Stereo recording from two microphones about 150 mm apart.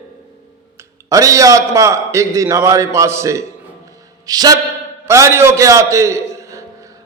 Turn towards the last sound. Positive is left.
turn(degrees=-20)  # may be behind; listen again after turning